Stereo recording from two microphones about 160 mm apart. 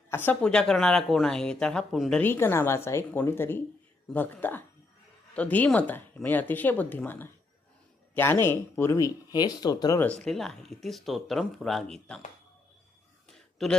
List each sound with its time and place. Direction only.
0.1 s speech: 10° left (ahead or behind)
10.2 s speech: 5° left (ahead or behind)
13.2 s a sound: centre (ahead or behind)